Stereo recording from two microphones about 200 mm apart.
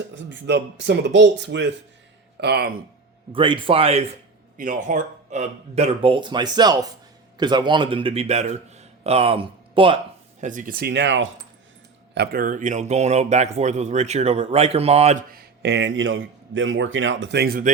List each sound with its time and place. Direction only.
0.2 s a man's voice: 60° right (ahead or behind)
2.4 s speech: 55° right (ahead or behind)
3.3 s a man's voice: 25° right (ahead or behind)
4.5 s a man's voice: 40° right (ahead or behind); by 10.0 s 25° right (ahead or behind)
10.4 s speech: 40° right (ahead or behind); by 11.3 s 65° right (ahead or behind)
12.1 s speech: 50° right (ahead or behind); by 15.2 s 30° right (ahead or behind)
15.3 s a man's voice: 55° right (ahead or behind)